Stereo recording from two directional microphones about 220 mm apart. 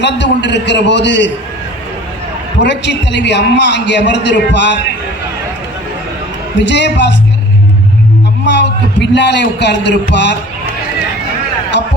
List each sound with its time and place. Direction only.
0.0 s a man's voice: 50° left (ahead or behind)
2.6 s a man's voice: 50° left (ahead or behind)
6.6 s a man's voice: 55° left (ahead or behind)
8.4 s a man's voice: 55° left (ahead or behind)
11.7 s a sound: 55° left (ahead or behind)